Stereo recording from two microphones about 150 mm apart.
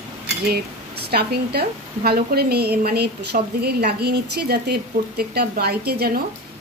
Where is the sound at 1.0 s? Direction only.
90° right.